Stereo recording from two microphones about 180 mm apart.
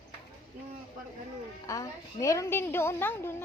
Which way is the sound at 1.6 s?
20° left (ahead or behind).